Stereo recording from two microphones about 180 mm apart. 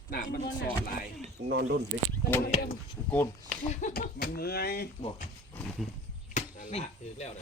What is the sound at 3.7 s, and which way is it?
Speech, 40° left (ahead or behind).